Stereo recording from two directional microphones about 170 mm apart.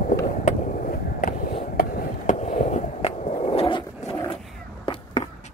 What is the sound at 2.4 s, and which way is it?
Skateboard, 45° left (ahead or behind).